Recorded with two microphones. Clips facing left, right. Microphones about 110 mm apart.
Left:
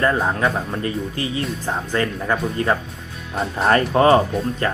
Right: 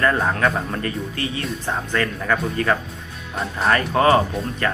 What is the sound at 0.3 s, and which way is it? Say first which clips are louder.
Speech: even; 10° left (ahead or behind).